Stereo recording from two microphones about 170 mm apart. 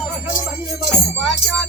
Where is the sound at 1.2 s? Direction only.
Centre (ahead or behind).